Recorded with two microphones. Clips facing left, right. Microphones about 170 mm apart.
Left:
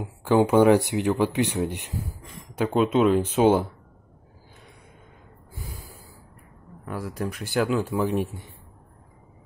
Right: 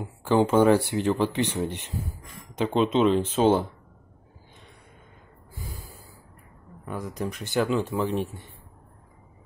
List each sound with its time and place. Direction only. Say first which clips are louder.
0.0 s speech: left 2 dB; 15° left (ahead or behind)
6.9 s speech: left 1 dB; 5° left (ahead or behind)